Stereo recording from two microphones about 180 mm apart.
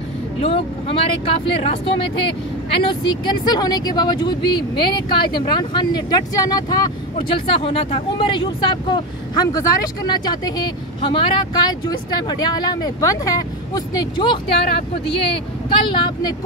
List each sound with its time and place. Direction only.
0.4 s speech: 30° left (ahead or behind)